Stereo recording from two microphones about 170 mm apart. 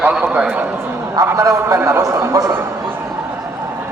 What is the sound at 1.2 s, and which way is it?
A man's voice, 20° right (ahead or behind).